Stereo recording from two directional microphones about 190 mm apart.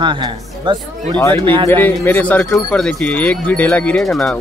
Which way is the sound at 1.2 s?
15° left (ahead or behind).